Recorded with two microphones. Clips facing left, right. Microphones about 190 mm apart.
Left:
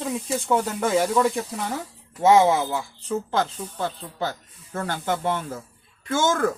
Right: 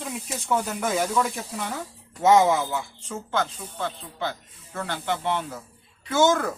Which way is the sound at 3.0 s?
35° left (ahead or behind).